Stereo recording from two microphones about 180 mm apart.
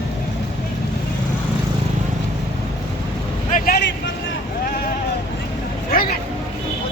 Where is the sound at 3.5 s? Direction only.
60° left (ahead or behind).